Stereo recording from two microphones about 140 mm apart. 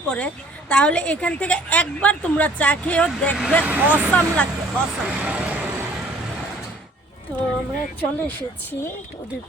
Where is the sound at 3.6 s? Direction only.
10° right (ahead or behind).